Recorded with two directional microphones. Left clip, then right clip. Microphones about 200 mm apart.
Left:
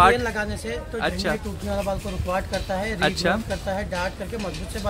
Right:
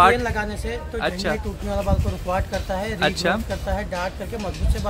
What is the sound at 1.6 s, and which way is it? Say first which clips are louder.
Speech: right 1 dB; 20° right (ahead or behind).